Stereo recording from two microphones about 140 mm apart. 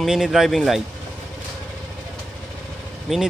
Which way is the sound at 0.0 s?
Centre (ahead or behind).